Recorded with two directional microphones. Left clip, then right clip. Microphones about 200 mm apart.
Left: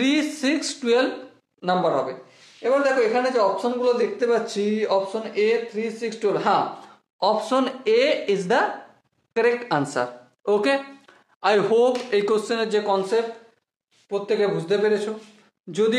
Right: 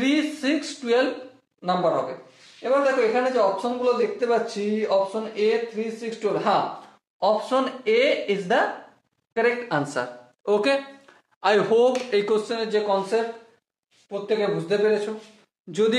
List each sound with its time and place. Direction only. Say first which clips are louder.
0.0 s speech: left 1 dB; 35° left (ahead or behind)
2.6 s speech: left 1 dB; 50° left (ahead or behind); by 10.0 s 30° left (ahead or behind)
10.4 s speech: left 1 dB; 15° left (ahead or behind); by 13.2 s 45° left (ahead or behind)
14.2 s speech: left 1 dB; 45° left (ahead or behind)
15.7 s speech: even; 15° left (ahead or behind)